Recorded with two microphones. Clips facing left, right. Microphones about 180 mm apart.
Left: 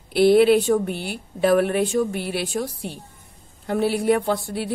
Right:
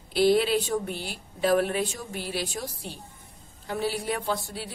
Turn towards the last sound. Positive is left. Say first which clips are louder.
# left 7 dB
turn(degrees=60)  # may be behind; listen again after turning